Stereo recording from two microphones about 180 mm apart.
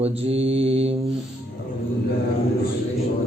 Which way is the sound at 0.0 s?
35° right (ahead or behind).